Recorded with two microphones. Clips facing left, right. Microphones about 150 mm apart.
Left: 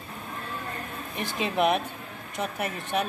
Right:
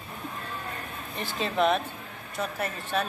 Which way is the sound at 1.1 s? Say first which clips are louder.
Left 1 dB; 15° left (ahead or behind).